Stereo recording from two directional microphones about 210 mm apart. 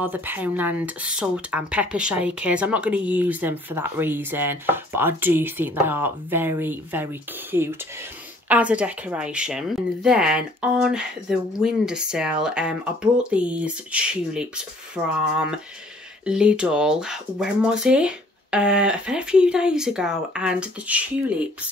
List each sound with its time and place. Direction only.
0.0 s speech: 10° right (ahead or behind)
16.3 s speech: 5° right (ahead or behind)